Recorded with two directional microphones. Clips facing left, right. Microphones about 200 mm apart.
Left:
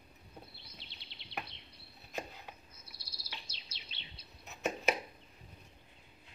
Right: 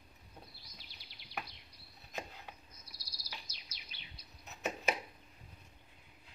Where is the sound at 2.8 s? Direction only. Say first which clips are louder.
Left 2 dB; 25° left (ahead or behind).